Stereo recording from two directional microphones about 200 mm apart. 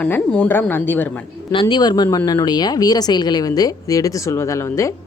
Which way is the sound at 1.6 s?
20° left (ahead or behind).